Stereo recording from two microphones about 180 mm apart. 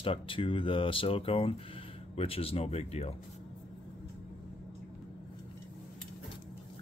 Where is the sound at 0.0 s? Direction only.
30° left (ahead or behind).